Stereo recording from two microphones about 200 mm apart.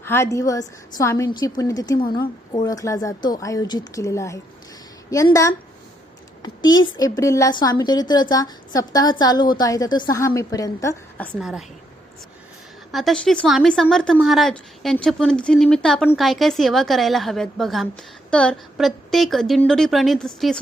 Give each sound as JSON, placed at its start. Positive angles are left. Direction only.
{"t": 0.0, "sound": "a woman's voice", "side_deg": 10}
{"t": 11.3, "sound": "a woman's voice", "side_deg": 0}
{"t": 12.9, "sound": "a woman's voice", "side_deg": 0}